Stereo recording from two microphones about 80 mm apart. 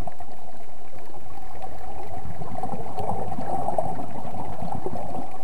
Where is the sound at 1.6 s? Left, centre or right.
Centre.